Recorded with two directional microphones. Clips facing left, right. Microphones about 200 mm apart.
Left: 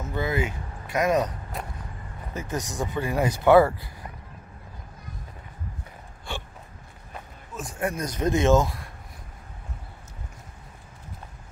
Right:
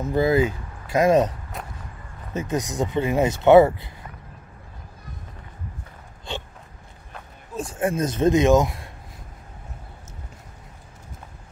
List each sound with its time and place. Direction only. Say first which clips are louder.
0.1 s speech: right 8 dB; 35° right (ahead or behind)
2.3 s speech: right 6 dB; 20° right (ahead or behind)
6.3 s gasp: right 3 dB; 20° right (ahead or behind)
7.5 s speech: right 5 dB; 25° right (ahead or behind)